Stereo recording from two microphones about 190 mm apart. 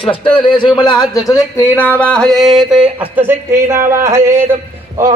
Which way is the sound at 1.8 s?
10° left (ahead or behind).